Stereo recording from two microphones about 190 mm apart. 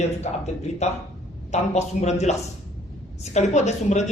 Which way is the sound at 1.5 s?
35° left (ahead or behind).